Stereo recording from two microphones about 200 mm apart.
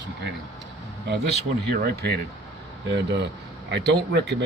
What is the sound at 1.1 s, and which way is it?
Speech, 60° right (ahead or behind).